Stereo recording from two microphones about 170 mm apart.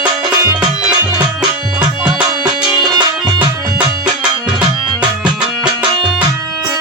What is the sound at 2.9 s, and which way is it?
Music, 25° right (ahead or behind).